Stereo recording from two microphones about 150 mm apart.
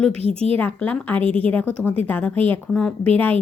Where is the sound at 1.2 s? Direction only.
40° right (ahead or behind).